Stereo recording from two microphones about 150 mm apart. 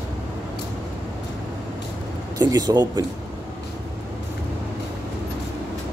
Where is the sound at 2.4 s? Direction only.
25° right (ahead or behind).